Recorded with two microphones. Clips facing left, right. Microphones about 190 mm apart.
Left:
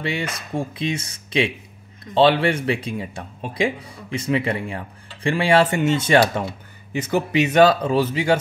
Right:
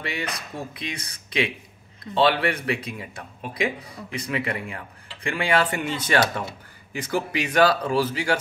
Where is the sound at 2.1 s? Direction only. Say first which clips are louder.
Left 5 dB; 25° left (ahead or behind).